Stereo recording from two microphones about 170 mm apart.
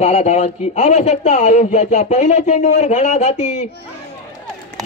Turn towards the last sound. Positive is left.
turn(degrees=45)  # may be behind; listen again after turning